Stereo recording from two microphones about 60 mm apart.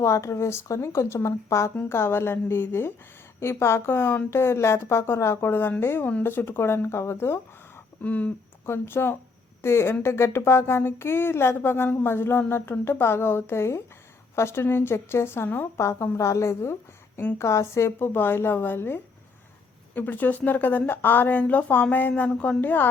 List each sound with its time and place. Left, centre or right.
0.0 s speech: left
1.9 s a woman's voice: left
8.0 s speech: left
8.6 s a woman's voice: left